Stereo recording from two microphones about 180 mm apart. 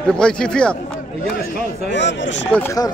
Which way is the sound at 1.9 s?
80° left.